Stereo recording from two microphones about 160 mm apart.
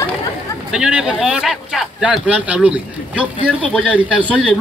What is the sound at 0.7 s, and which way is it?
Speech, 5° right (ahead or behind).